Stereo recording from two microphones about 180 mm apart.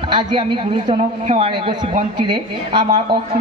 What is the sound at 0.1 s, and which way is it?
Speech, 25° right (ahead or behind).